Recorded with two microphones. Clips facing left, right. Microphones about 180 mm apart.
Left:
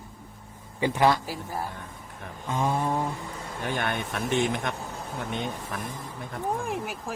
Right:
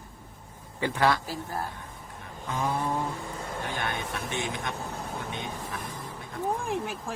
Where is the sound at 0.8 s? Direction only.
15° left (ahead or behind).